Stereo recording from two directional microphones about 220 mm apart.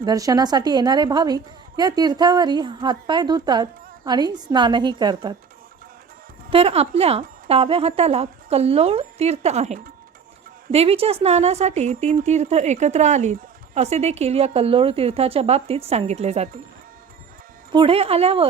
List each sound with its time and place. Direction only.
0.0 s a woman's voice: 15° right (ahead or behind)
6.5 s a woman's voice: 25° right (ahead or behind)
17.7 s a woman's voice: 25° right (ahead or behind)